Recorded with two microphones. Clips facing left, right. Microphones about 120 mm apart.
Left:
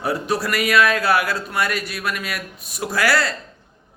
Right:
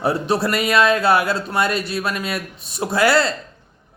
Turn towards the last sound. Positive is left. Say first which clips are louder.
# right 4 dB
turn(degrees=-25)  # may be behind; listen again after turning